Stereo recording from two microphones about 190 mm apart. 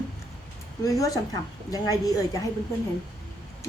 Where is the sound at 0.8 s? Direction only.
20° left (ahead or behind).